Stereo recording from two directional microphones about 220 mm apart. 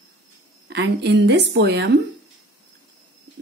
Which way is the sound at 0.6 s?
50° right (ahead or behind).